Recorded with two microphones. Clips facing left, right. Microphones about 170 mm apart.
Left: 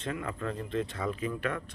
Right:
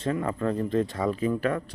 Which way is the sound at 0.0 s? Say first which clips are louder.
Right 8 dB; 35° right (ahead or behind).